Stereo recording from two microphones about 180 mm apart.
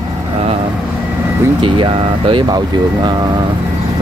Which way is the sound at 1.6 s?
30° right (ahead or behind).